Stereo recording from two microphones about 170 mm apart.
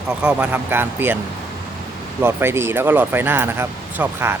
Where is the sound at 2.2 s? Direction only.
15° right (ahead or behind).